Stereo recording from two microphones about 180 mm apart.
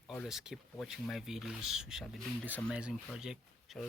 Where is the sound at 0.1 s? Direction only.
Centre (ahead or behind).